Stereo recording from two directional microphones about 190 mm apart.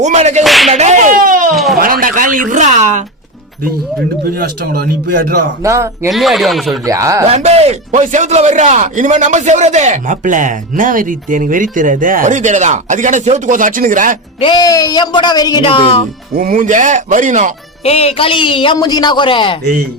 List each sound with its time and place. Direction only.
0.0 s a man's voice: 35° right (ahead or behind)
0.4 s speech: centre (ahead or behind)
0.7 s speech: 35° right (ahead or behind)
1.5 s speech: centre (ahead or behind)
1.8 s speech: 50° right (ahead or behind)
4.2 s speech: 55° right (ahead or behind)
5.6 s speech: 15° right (ahead or behind)
6.1 s speech: centre (ahead or behind)
6.8 s speech: 15° right (ahead or behind)
7.3 s a man's voice: 35° right (ahead or behind)
14.4 s a man's voice: 20° left (ahead or behind)
16.3 s a man's voice: 50° right (ahead or behind)
17.8 s a man's voice: 30° left (ahead or behind)